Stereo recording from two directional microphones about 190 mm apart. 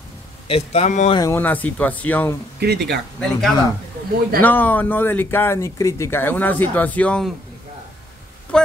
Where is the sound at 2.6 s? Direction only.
60° right (ahead or behind).